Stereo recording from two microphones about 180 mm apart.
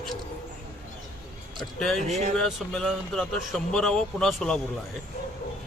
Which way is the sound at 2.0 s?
40° right (ahead or behind).